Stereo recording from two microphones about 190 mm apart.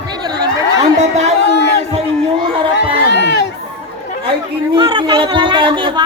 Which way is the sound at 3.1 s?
65° left (ahead or behind).